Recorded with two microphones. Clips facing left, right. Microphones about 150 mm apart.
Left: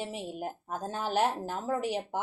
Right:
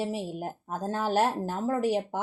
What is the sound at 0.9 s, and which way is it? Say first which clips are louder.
Speech: right 4 dB; 45° right (ahead or behind).